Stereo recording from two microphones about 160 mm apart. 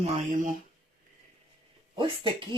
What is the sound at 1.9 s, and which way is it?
Speech, 30° right (ahead or behind).